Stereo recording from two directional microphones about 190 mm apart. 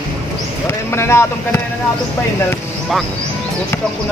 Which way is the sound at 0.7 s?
15° left (ahead or behind).